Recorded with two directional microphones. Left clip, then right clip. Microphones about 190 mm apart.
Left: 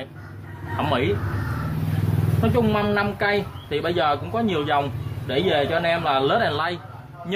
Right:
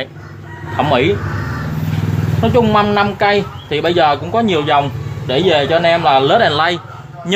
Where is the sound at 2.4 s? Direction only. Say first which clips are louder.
Right 10 dB; 20° right (ahead or behind).